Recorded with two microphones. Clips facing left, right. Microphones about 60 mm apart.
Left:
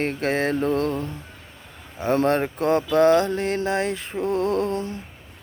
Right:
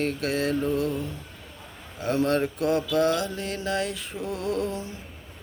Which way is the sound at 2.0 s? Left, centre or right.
Left.